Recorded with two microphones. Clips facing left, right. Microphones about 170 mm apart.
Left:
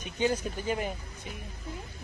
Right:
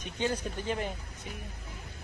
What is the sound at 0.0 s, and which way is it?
Speech, 10° left (ahead or behind).